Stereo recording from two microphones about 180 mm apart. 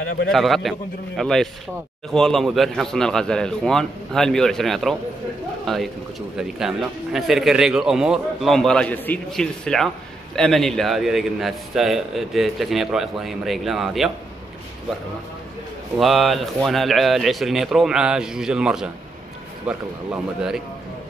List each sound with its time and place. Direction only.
0.3 s a man's voice: centre (ahead or behind)
16.0 s a man's voice: centre (ahead or behind)